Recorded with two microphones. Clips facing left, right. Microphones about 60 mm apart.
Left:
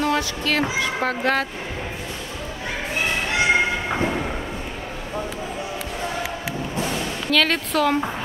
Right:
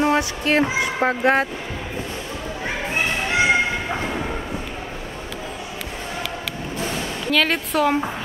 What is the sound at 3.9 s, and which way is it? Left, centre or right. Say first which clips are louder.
Train: left 2 dB; centre.